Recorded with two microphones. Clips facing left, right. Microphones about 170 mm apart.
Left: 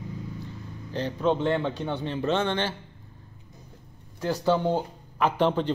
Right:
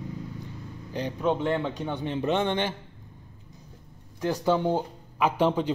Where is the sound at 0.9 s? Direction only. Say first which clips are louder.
Left 1 dB; 10° right (ahead or behind).